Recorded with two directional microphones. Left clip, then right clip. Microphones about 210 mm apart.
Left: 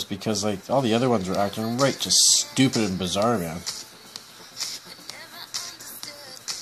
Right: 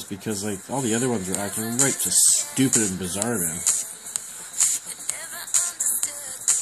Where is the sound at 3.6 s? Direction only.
45° right (ahead or behind).